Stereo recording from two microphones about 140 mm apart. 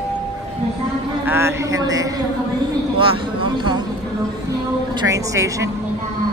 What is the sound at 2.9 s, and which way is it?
Speech, 40° right (ahead or behind).